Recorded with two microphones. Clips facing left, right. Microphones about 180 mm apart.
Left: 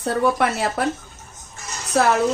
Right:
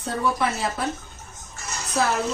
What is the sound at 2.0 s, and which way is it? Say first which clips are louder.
Speech: left 5 dB; 70° left (ahead or behind).